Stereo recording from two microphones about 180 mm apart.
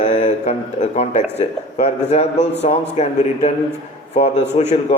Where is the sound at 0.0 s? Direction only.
40° left (ahead or behind).